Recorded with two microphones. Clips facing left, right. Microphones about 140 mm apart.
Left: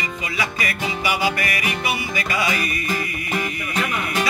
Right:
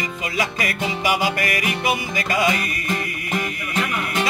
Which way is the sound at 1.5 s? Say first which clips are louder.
Right 2 dB; 45° right (ahead or behind).